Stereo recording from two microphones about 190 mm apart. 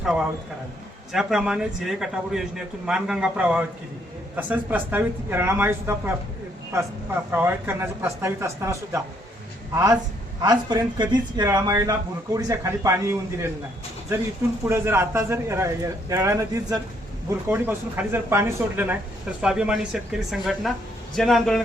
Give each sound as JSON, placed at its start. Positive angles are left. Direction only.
{"t": 0.0, "sound": "a man's voice", "side_deg": -5}
{"t": 7.3, "sound": "a woman's voice", "side_deg": -10}
{"t": 14.7, "sound": "speech", "side_deg": -15}